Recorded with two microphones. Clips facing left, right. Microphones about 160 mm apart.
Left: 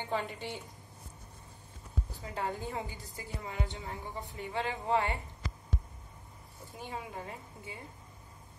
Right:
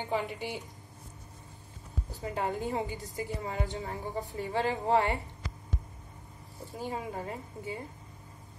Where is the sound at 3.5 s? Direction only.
40° right (ahead or behind).